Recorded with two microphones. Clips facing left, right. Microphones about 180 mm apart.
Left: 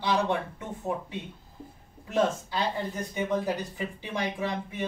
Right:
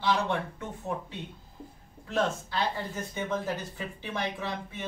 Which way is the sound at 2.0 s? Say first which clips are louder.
Left 3 dB; 15° left (ahead or behind).